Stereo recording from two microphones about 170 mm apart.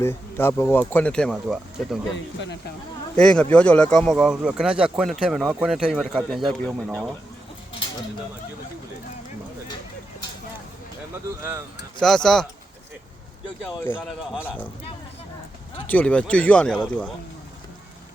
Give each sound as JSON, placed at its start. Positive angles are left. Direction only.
{"t": 0.0, "sound": "speech", "side_deg": 15}
{"t": 2.1, "sound": "speech", "side_deg": 90}
{"t": 3.2, "sound": "speech", "side_deg": 5}
{"t": 11.9, "sound": "speech", "side_deg": 5}
{"t": 13.8, "sound": "speech", "side_deg": 10}
{"t": 15.9, "sound": "speech", "side_deg": 10}